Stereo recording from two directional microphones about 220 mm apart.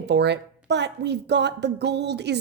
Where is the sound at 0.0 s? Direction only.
50° right (ahead or behind).